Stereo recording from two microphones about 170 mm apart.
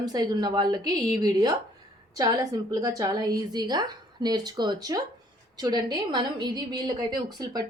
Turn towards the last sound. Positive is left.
turn(degrees=-25)  # may be behind; listen again after turning